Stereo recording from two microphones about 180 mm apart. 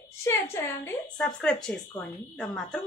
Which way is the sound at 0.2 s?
15° left (ahead or behind).